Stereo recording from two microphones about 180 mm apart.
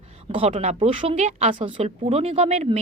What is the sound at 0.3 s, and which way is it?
A woman's voice, 30° right (ahead or behind).